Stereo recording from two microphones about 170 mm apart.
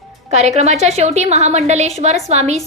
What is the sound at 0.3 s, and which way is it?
A woman's voice, 40° right (ahead or behind).